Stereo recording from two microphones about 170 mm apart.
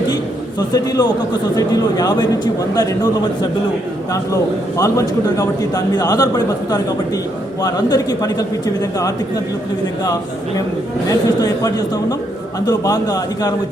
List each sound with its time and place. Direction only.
0.7 s a man's voice: 25° left (ahead or behind)
4.8 s a man's voice: 20° left (ahead or behind)
11.1 s a man's voice: 20° left (ahead or behind)